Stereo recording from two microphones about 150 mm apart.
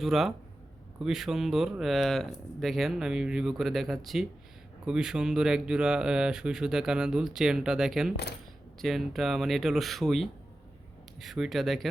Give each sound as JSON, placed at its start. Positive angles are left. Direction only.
{"t": 0.0, "sound": "speech", "side_deg": 0}
{"t": 8.1, "sound": "speech", "side_deg": 90}
{"t": 8.8, "sound": "speech", "side_deg": 0}